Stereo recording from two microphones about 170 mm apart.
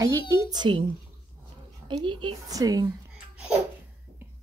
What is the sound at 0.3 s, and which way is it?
Speech, 25° right (ahead or behind).